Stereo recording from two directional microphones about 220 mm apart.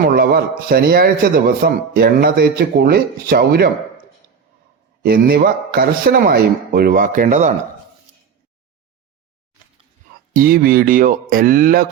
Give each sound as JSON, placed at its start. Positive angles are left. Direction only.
{"t": 0.0, "sound": "a man's voice", "side_deg": -45}
{"t": 5.0, "sound": "speech", "side_deg": -40}
{"t": 10.3, "sound": "speech", "side_deg": -40}